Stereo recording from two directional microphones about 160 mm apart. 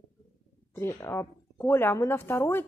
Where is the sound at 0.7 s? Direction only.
15° left (ahead or behind).